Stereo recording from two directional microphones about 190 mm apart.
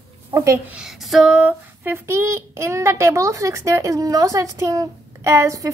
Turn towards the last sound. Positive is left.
turn(degrees=-15)  # may be behind; listen again after turning